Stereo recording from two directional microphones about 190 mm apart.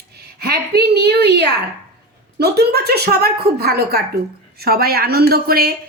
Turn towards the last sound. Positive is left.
turn(degrees=-55)  # may be behind; listen again after turning